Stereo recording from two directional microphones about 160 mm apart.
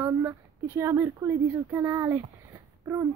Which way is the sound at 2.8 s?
20° right (ahead or behind).